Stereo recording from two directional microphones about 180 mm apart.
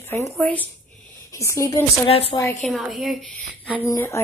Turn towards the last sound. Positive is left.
turn(degrees=15)  # may be behind; listen again after turning